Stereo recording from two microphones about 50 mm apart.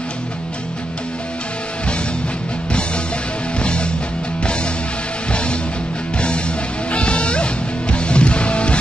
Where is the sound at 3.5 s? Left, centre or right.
Left.